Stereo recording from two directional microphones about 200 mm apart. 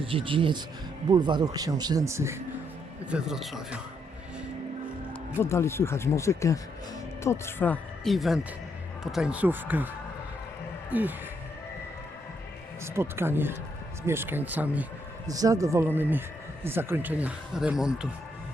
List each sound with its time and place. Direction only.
0.0 s speech: 25° right (ahead or behind)
3.1 s speech: 5° right (ahead or behind)
5.4 s speech: 15° left (ahead or behind); by 9.9 s 10° right (ahead or behind)
10.9 s speech: 10° right (ahead or behind)
12.8 s speech: 10° right (ahead or behind)